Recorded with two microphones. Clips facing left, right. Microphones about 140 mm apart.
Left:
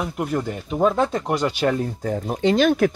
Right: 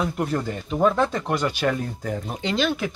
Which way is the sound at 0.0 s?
10° left (ahead or behind).